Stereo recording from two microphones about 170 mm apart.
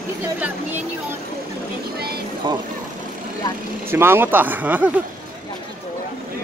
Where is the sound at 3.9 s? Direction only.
15° right (ahead or behind).